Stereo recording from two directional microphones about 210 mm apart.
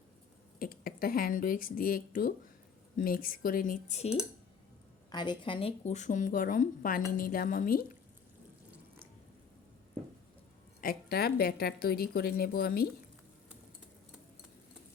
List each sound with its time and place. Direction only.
0.6 s a woman's voice: 45° left (ahead or behind)
5.1 s a woman's voice: 20° left (ahead or behind); by 7.9 s 40° left (ahead or behind)
10.8 s a woman's voice: 45° left (ahead or behind)